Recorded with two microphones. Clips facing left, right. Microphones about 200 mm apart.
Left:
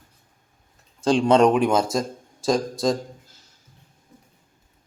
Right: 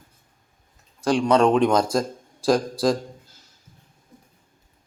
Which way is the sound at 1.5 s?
5° left (ahead or behind).